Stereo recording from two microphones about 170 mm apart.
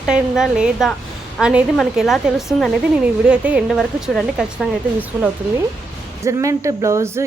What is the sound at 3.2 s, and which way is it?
Speech, 5° right (ahead or behind).